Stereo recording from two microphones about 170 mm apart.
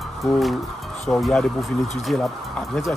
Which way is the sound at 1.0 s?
5° left (ahead or behind).